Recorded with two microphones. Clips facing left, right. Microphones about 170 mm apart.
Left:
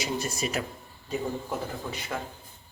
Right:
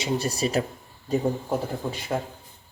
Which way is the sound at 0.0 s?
30° right (ahead or behind).